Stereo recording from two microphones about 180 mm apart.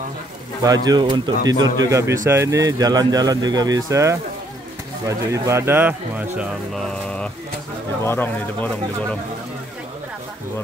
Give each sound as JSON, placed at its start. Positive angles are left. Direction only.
{"t": 0.8, "sound": "speech", "side_deg": -25}
{"t": 1.4, "sound": "speech", "side_deg": -90}
{"t": 1.9, "sound": "speech", "side_deg": -15}
{"t": 6.7, "sound": "mantra", "side_deg": 5}
{"t": 8.0, "sound": "speech", "side_deg": 10}